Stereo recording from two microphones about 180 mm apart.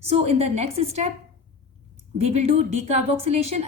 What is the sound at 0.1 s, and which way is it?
Speech, 35° right (ahead or behind).